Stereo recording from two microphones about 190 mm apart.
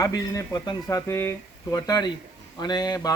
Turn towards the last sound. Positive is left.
turn(degrees=20)  # may be behind; listen again after turning